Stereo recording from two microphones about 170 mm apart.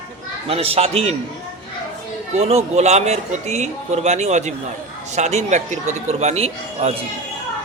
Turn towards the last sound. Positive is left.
turn(degrees=-40)  # may be behind; listen again after turning